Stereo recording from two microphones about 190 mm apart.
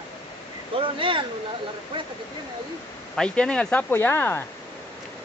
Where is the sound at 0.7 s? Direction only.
25° right (ahead or behind).